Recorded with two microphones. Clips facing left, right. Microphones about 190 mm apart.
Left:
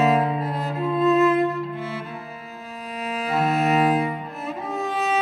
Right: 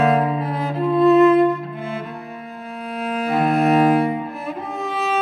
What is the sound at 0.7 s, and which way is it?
Music, centre (ahead or behind).